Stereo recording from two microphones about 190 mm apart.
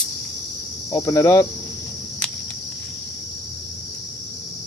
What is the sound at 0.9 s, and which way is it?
Speech, 15° left (ahead or behind).